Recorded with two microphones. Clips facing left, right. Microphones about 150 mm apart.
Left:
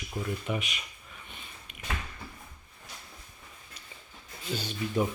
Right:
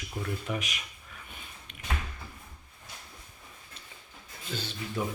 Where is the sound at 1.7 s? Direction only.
5° left (ahead or behind).